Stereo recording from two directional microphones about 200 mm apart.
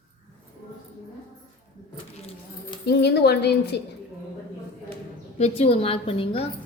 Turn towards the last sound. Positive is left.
turn(degrees=30)  # may be behind; listen again after turning